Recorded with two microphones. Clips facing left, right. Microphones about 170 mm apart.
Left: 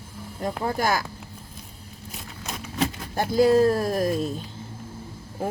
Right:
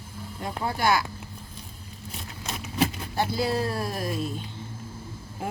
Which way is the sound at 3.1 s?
45° left (ahead or behind).